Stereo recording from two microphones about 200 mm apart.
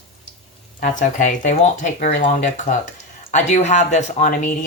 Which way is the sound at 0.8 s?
40° left (ahead or behind).